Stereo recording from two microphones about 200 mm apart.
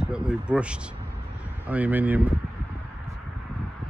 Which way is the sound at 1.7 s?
10° right (ahead or behind).